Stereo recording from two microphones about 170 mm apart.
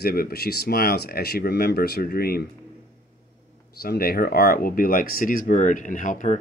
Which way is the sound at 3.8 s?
65° left (ahead or behind).